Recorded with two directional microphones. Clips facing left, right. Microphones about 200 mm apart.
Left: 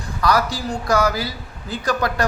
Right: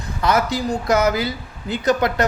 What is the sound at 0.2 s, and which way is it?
A man's voice, 20° right (ahead or behind).